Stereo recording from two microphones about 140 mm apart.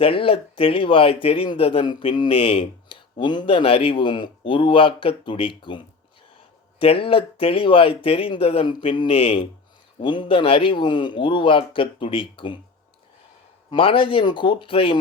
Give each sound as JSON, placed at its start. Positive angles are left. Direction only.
{"t": 0.0, "sound": "speech", "side_deg": 40}
{"t": 13.7, "sound": "speech", "side_deg": 40}